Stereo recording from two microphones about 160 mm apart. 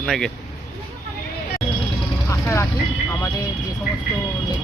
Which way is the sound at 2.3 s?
20° left (ahead or behind).